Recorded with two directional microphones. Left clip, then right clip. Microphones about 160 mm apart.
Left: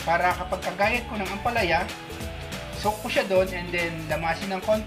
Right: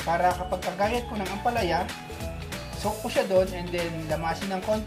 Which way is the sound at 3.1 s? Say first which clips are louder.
Even; 45° right (ahead or behind).